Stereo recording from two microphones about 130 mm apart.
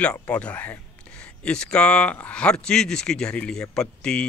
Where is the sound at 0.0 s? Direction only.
10° left (ahead or behind).